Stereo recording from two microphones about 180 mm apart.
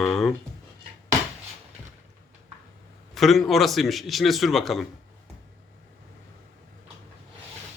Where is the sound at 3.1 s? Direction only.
Centre (ahead or behind).